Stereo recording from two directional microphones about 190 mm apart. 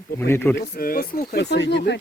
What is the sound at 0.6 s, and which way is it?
Speech, 50° left (ahead or behind).